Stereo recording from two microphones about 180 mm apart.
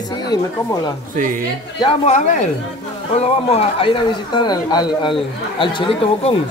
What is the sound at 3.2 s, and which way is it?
Speech, 35° left (ahead or behind).